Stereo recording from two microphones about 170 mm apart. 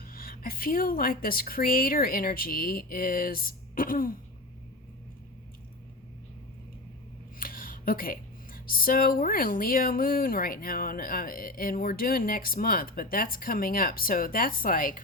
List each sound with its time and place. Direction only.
0.0 s speech: 60° left (ahead or behind)
7.3 s speech: 55° left (ahead or behind)